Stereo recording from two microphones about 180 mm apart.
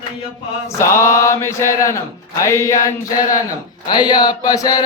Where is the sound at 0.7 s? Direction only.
15° left (ahead or behind).